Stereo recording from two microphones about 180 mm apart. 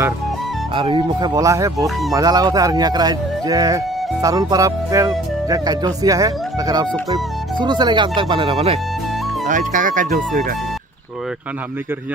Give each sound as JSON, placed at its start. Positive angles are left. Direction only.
{"t": 0.7, "sound": "speech", "side_deg": -25}
{"t": 9.5, "sound": "speech", "side_deg": -45}